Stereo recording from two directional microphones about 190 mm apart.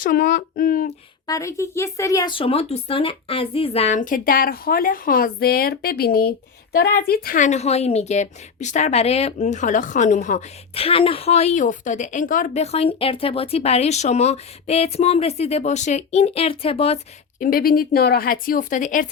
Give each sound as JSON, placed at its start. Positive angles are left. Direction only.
{"t": 0.0, "sound": "a woman's voice", "side_deg": 45}
{"t": 1.3, "sound": "a woman's voice", "side_deg": 15}
{"t": 17.4, "sound": "a woman's voice", "side_deg": 50}